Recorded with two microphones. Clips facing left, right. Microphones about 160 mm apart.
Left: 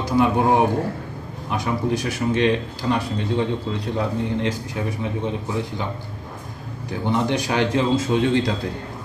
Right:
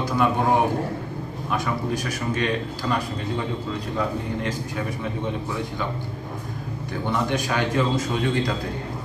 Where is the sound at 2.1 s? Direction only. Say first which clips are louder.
Left 5 dB; 25° left (ahead or behind).